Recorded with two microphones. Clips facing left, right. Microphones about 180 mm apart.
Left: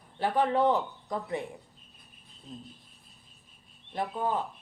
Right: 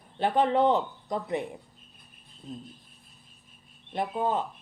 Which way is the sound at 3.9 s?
20° right (ahead or behind).